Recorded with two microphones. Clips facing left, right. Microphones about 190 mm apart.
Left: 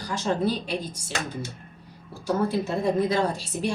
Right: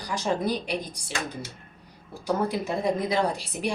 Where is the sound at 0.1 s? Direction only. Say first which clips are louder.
Left 1 dB; 15° right (ahead or behind).